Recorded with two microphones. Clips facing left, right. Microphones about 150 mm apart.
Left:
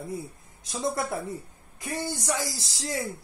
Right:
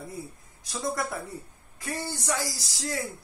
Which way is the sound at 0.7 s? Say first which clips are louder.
Left 2 dB; 25° left (ahead or behind).